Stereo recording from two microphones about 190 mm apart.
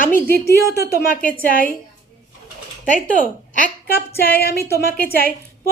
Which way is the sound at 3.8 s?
55° left (ahead or behind).